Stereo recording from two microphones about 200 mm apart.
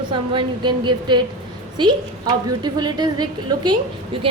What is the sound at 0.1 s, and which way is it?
A woman's voice, 25° right (ahead or behind).